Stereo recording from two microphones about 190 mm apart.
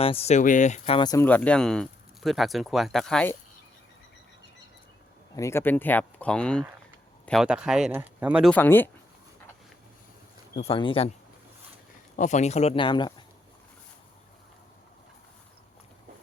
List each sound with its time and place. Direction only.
0.0 s speech: 30° left (ahead or behind); by 3.3 s 5° left (ahead or behind)
5.4 s speech: 15° left (ahead or behind); by 8.5 s 5° right (ahead or behind)
8.5 s speech: 10° left (ahead or behind)
10.6 s speech: 30° left (ahead or behind)
12.1 s speech: 40° left (ahead or behind); by 13.2 s 25° left (ahead or behind)